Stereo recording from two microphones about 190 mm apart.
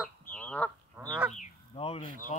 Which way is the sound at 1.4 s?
30° left (ahead or behind).